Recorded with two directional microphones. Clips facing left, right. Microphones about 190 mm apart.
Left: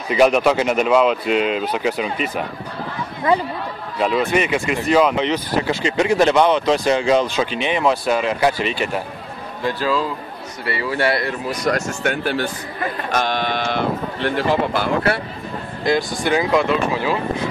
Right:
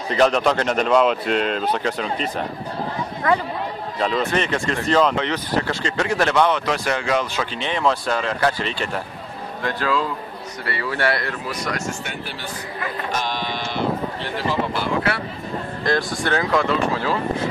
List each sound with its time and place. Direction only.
0.1 s speech: 10° left (ahead or behind)
4.0 s speech: 10° left (ahead or behind)
9.7 s speech: 30° left (ahead or behind)
10.6 s speech: 15° left (ahead or behind)
11.6 s speech: 55° left (ahead or behind)
15.8 s speech: 5° left (ahead or behind)